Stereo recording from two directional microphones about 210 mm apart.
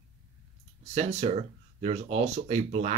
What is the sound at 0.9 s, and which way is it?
Speech, 30° right (ahead or behind).